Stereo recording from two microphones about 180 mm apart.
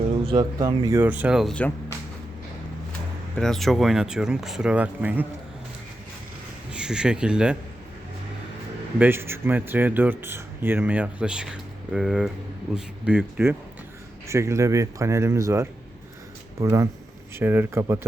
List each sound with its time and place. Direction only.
0.3 s speech: 25° right (ahead or behind); by 1.7 s 5° left (ahead or behind)
3.3 s speech: centre (ahead or behind)
6.7 s speech: 5° right (ahead or behind)
9.0 s speech: 10° right (ahead or behind)